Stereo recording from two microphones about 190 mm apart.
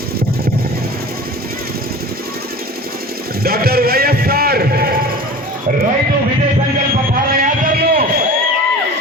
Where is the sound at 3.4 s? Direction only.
55° right (ahead or behind).